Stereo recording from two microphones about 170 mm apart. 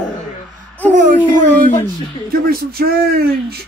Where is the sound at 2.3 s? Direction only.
60° right (ahead or behind).